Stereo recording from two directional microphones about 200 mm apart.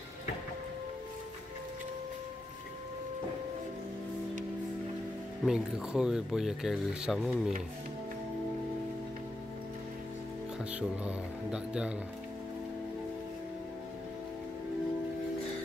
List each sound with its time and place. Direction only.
5.4 s speech: 5° right (ahead or behind)
10.6 s speech: 5° right (ahead or behind)